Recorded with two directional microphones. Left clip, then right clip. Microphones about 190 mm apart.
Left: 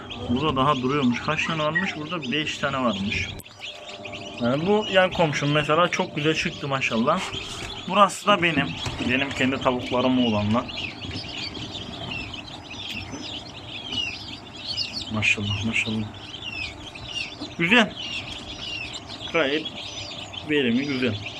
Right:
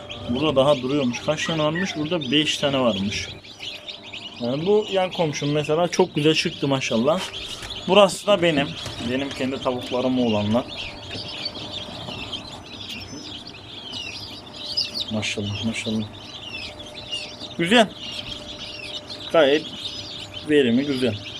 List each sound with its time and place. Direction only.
0.4 s speech: 45° right (ahead or behind)
0.7 s speech: 35° right (ahead or behind)
4.4 s a man's voice: 20° right (ahead or behind); by 8.6 s 40° right (ahead or behind)
9.0 s a man's voice: 25° right (ahead or behind)
15.1 s speech: 40° right (ahead or behind)
17.6 s speech: 45° right (ahead or behind)
19.3 s speech: 40° right (ahead or behind)